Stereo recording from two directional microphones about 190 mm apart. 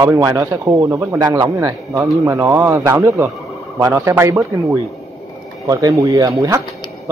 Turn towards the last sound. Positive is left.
turn(degrees=-15)  # may be behind; listen again after turning